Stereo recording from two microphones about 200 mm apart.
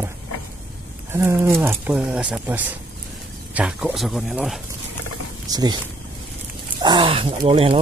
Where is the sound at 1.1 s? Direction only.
10° right (ahead or behind).